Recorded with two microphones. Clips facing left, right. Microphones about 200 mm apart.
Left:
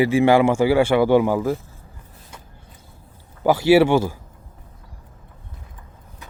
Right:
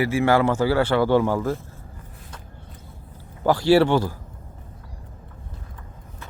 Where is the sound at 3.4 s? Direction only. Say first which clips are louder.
Left 2 dB; 10° left (ahead or behind).